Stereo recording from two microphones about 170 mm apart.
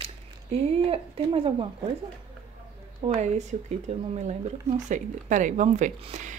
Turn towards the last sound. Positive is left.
turn(degrees=-40)  # may be behind; listen again after turning